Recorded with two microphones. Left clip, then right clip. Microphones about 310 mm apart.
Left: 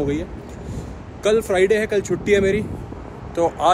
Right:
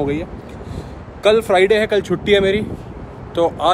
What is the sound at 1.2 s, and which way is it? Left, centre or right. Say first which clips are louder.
Speech: right 4 dB; centre.